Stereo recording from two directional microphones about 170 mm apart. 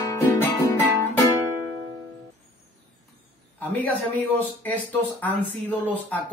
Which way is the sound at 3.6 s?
10° left (ahead or behind).